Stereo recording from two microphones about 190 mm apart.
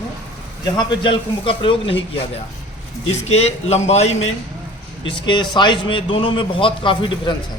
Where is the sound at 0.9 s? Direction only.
25° left (ahead or behind).